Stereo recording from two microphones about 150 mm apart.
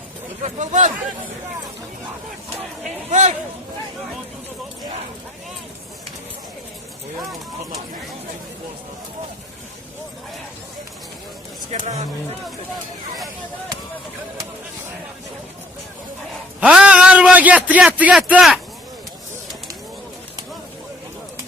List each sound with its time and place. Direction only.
0.4 s speech: 55° right (ahead or behind)
3.1 s speech: 50° right (ahead or behind)
11.7 s speech: 50° right (ahead or behind)
16.6 s a man's voice: 5° right (ahead or behind)